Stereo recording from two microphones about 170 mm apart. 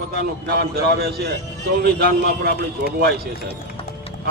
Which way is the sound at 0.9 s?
70° right (ahead or behind).